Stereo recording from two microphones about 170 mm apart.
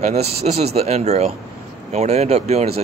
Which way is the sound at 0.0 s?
40° right (ahead or behind).